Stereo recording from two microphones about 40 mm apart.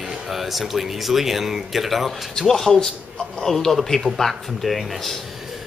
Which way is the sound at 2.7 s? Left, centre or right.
Centre.